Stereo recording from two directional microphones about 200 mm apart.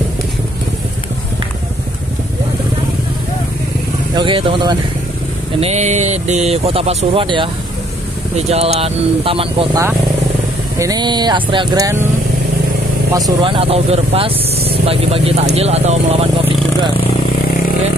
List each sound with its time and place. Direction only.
4.1 s speech: 25° right (ahead or behind)
10.8 s speech: 20° right (ahead or behind)
13.4 s speech: 25° right (ahead or behind)